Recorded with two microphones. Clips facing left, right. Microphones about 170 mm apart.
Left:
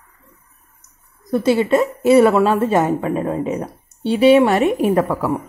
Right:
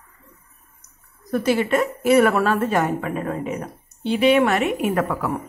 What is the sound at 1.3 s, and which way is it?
A woman's voice, 20° left (ahead or behind).